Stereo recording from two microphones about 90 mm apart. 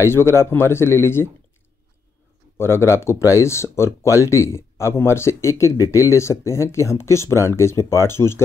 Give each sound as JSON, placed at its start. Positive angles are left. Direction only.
{"t": 0.0, "sound": "speech", "side_deg": 30}
{"t": 2.5, "sound": "speech", "side_deg": 30}